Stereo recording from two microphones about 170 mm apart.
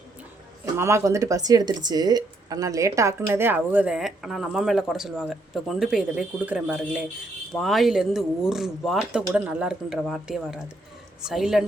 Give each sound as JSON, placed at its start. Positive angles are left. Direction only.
{"t": 0.6, "sound": "speech", "side_deg": -15}